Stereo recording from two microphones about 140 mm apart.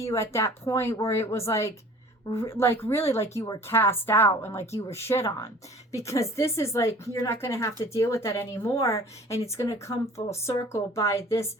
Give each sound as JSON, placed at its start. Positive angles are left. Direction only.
{"t": 0.1, "sound": "a woman's voice", "side_deg": 20}